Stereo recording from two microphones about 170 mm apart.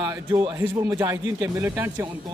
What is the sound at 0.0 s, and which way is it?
Speech, 20° right (ahead or behind).